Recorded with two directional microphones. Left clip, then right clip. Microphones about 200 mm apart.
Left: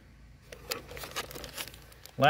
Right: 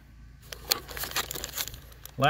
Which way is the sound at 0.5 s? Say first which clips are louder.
Right 8 dB; 45° right (ahead or behind).